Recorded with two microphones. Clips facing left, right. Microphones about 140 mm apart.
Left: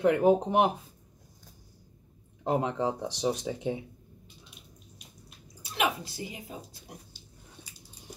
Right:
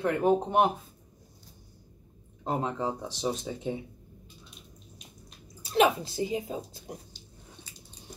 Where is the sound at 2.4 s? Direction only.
20° left (ahead or behind).